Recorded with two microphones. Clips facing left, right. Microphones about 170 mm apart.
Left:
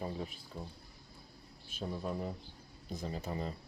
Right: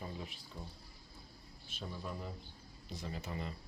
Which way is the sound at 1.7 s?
40° left (ahead or behind).